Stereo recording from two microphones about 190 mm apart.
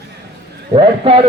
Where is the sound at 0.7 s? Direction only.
30° right (ahead or behind).